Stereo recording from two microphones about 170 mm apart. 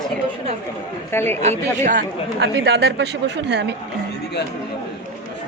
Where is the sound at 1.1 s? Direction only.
15° left (ahead or behind).